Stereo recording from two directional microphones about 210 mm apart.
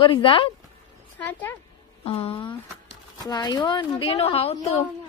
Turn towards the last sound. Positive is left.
turn(degrees=30)  # may be behind; listen again after turning